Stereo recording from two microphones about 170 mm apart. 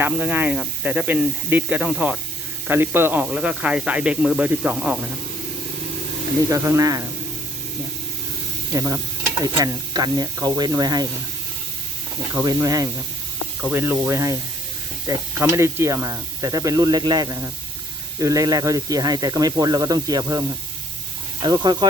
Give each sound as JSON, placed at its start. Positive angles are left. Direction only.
{"t": 0.0, "sound": "speech", "side_deg": -10}
{"t": 6.5, "sound": "speech", "side_deg": -20}
{"t": 8.7, "sound": "speech", "side_deg": -20}
{"t": 12.3, "sound": "speech", "side_deg": -15}
{"t": 21.4, "sound": "speech", "side_deg": -25}